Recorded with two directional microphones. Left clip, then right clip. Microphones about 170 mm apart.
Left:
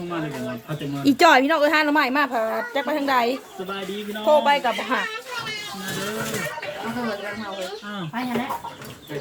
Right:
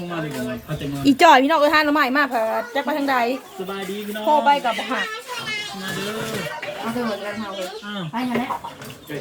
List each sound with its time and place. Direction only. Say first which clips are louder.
1.0 s a woman's voice: right 3 dB; centre (ahead or behind); by 3.3 s 25° left (ahead or behind)
4.3 s speech: right 1 dB; 60° left (ahead or behind)